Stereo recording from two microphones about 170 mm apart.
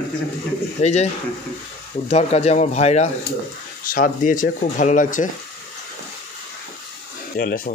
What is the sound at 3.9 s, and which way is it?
Speech, 55° left (ahead or behind).